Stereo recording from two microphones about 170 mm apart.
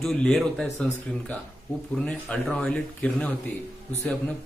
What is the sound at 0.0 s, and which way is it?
A man's voice, centre (ahead or behind).